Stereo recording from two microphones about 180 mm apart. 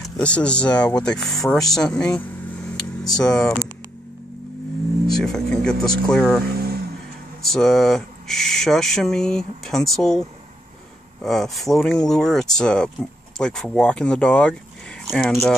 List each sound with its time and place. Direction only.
0.2 s speech: 5° left (ahead or behind)
3.3 s speech: 5° left (ahead or behind)
5.0 s music: 5° left (ahead or behind)
6.6 s vehicle: 60° right (ahead or behind)
7.4 s speech: centre (ahead or behind)
11.2 s speech: centre (ahead or behind)